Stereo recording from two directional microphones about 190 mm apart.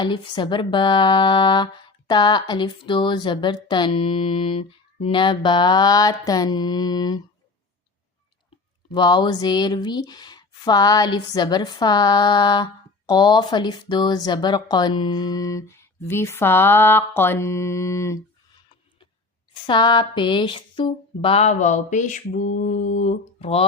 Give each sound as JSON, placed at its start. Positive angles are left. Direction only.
{"t": 0.0, "sound": "speech", "side_deg": 25}
{"t": 8.9, "sound": "speech", "side_deg": 25}
{"t": 19.6, "sound": "speech", "side_deg": 25}
{"t": 22.3, "sound": "mantra", "side_deg": 45}